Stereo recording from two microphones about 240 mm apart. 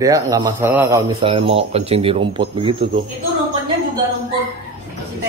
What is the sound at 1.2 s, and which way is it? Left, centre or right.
Speech, right.